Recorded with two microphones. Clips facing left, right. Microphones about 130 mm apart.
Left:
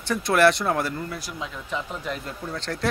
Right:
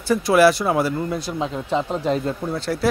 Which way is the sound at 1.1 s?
25° right (ahead or behind).